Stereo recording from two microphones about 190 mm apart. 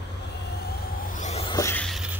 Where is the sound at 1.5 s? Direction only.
15° left (ahead or behind).